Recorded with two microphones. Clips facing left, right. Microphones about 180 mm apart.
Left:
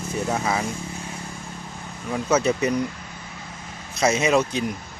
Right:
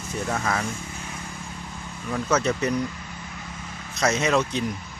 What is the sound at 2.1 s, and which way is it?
Speech, 10° left (ahead or behind).